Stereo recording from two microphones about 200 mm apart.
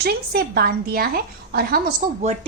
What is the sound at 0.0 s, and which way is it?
A woman's voice, 50° right (ahead or behind).